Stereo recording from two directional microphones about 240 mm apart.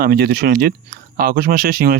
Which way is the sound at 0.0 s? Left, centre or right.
Right.